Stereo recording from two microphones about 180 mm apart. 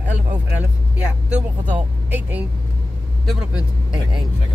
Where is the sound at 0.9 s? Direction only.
5° right (ahead or behind).